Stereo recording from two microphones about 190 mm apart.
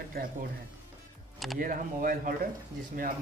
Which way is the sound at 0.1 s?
50° right (ahead or behind).